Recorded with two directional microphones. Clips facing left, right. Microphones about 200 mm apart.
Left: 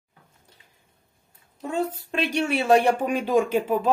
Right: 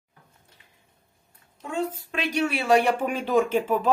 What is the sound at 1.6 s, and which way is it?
Speech, 35° left (ahead or behind).